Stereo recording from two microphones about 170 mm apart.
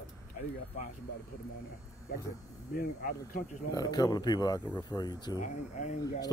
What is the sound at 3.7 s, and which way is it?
Speech, 20° left (ahead or behind).